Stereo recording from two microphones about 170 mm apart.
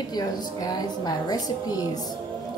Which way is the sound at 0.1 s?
25° left (ahead or behind).